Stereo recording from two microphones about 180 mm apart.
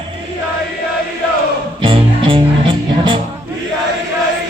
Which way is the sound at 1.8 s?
30° right (ahead or behind).